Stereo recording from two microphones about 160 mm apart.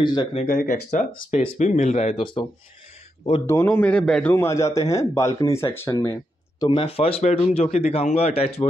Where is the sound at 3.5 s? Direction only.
15° left (ahead or behind).